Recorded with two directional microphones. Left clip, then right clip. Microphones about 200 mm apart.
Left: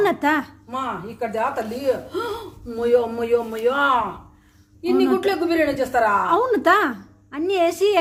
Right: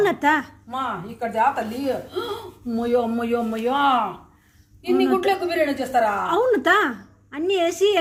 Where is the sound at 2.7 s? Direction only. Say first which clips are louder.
Left 3 dB; 20° left (ahead or behind).